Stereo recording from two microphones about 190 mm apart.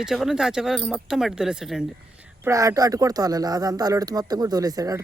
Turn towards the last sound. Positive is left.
turn(degrees=-20)  # may be behind; listen again after turning